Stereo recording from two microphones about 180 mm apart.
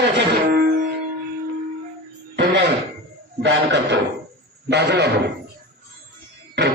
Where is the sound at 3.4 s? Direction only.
75° right (ahead or behind).